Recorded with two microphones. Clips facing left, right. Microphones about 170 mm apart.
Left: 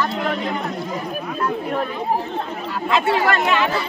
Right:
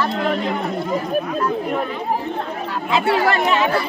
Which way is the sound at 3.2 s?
25° right (ahead or behind).